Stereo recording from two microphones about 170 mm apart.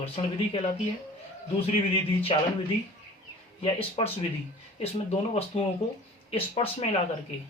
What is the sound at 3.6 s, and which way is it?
Speech, 35° left (ahead or behind).